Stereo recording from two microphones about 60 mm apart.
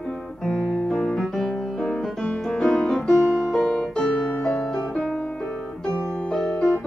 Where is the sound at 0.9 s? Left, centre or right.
Centre.